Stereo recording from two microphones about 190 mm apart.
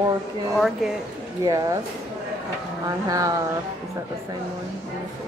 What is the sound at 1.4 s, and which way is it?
Speech, 15° right (ahead or behind).